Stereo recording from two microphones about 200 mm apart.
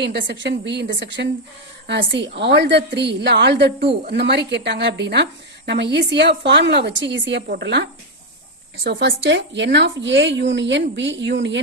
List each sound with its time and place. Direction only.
0.0 s a woman's voice: 60° right (ahead or behind)